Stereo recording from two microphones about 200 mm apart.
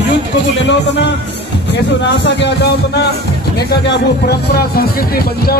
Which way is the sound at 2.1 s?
60° left (ahead or behind).